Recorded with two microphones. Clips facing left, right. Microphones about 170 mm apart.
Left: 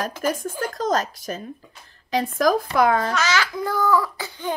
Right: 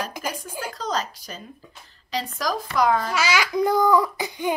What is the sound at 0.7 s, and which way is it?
A woman's voice, 50° left (ahead or behind).